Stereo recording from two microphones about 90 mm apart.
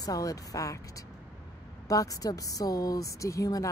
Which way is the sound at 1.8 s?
40° left (ahead or behind).